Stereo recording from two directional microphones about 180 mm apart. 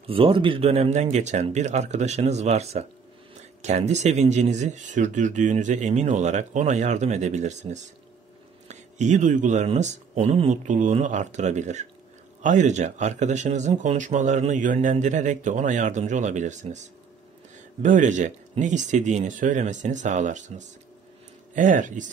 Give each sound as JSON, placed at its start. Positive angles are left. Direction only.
{"t": 0.0, "sound": "speech", "side_deg": -30}